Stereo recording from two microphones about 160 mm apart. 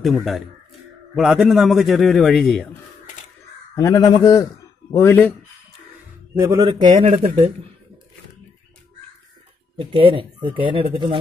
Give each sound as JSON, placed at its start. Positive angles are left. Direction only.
{"t": 0.0, "sound": "a man's voice", "side_deg": 0}
{"t": 3.7, "sound": "crow", "side_deg": 20}
{"t": 4.9, "sound": "speech", "side_deg": 10}
{"t": 6.3, "sound": "a man's voice", "side_deg": -20}
{"t": 6.9, "sound": "speech", "side_deg": -50}
{"t": 9.8, "sound": "speech", "side_deg": -35}